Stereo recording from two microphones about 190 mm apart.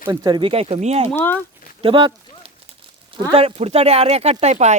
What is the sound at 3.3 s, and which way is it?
Speech, 25° right (ahead or behind).